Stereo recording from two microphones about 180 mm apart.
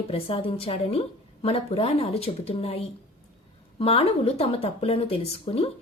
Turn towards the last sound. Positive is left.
turn(degrees=35)  # may be behind; listen again after turning